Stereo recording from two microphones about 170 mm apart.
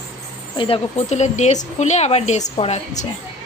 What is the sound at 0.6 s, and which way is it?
A woman's voice, 35° left (ahead or behind).